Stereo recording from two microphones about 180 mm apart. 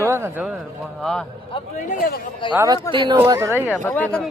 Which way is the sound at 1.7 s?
50° left (ahead or behind).